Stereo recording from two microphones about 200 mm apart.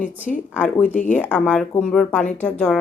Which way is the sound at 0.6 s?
5° left (ahead or behind).